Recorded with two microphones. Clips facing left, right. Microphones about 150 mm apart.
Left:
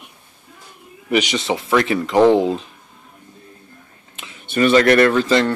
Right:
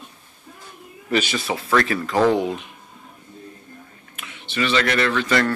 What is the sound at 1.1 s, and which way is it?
Speech, 15° left (ahead or behind).